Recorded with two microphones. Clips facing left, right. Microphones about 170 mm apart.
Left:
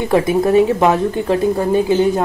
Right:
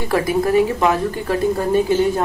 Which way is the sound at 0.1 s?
25° left (ahead or behind).